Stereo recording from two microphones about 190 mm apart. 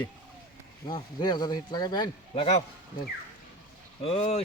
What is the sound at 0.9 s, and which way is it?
Speech, 20° left (ahead or behind).